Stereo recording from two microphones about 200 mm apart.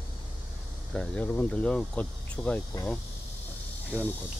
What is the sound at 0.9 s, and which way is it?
Speech, 5° left (ahead or behind).